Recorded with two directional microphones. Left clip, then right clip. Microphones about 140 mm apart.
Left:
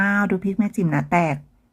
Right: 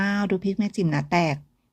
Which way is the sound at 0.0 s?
40° right (ahead or behind).